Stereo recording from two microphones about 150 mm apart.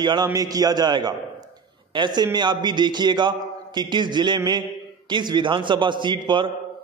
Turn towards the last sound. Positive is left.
turn(degrees=-30)  # may be behind; listen again after turning